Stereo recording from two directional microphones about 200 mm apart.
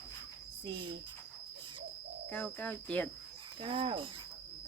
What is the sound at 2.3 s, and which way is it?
Speech, 5° left (ahead or behind).